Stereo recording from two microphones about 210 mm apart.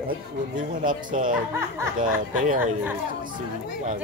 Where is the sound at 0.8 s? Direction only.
40° right (ahead or behind).